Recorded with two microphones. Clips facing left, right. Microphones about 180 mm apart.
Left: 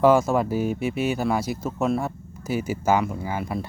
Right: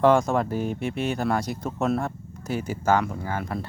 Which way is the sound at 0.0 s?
5° left (ahead or behind).